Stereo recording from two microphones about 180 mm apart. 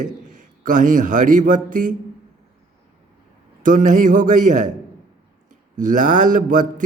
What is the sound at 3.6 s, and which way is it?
Speech, 45° right (ahead or behind).